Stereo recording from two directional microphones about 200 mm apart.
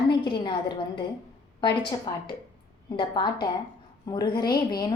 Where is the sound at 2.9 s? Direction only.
20° left (ahead or behind).